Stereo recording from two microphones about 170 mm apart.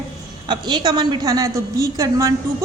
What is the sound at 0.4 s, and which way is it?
A woman's voice, 25° right (ahead or behind).